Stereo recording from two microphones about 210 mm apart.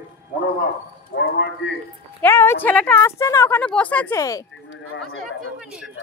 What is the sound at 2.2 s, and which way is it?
Speech, 10° left (ahead or behind).